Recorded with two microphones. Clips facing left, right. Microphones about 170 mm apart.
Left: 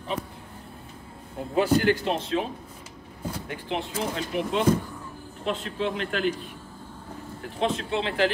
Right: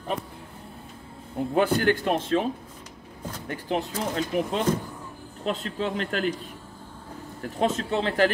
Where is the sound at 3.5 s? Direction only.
40° right (ahead or behind).